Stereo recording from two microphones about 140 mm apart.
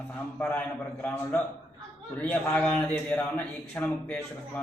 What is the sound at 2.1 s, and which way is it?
A man's voice, 10° left (ahead or behind).